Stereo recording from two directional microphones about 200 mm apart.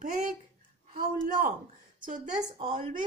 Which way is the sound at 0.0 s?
40° right (ahead or behind).